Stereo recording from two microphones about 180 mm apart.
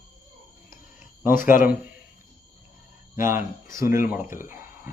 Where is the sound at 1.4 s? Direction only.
50° left (ahead or behind).